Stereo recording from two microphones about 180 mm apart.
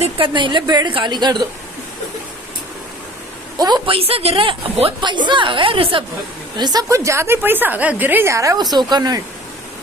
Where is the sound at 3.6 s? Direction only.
20° right (ahead or behind).